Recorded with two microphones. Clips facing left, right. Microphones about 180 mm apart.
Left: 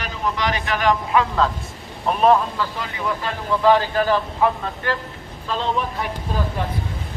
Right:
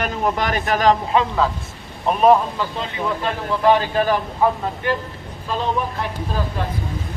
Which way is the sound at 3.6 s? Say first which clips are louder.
Even; 15° right (ahead or behind).